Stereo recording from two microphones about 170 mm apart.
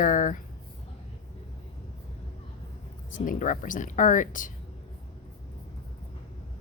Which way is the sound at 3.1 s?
50° left (ahead or behind).